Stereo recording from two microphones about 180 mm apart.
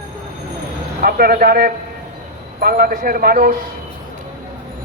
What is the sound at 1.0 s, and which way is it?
A man's voice, 55° right (ahead or behind).